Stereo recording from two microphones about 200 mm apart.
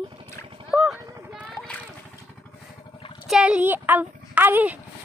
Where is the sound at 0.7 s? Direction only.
5° right (ahead or behind).